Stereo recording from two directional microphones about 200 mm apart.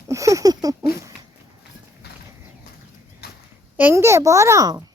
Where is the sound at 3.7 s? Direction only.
10° right (ahead or behind).